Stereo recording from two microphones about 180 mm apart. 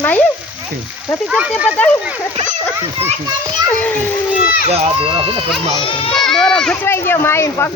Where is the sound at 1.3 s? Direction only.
5° right (ahead or behind).